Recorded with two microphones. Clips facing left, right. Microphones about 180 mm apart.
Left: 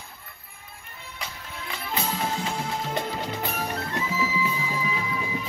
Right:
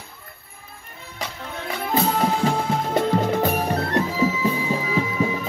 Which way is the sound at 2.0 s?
60° right (ahead or behind).